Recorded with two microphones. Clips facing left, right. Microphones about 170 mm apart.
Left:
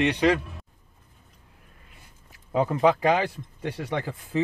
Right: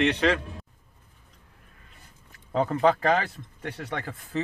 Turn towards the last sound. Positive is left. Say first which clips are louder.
# left 4 dB
turn(degrees=10)  # may be behind; listen again after turning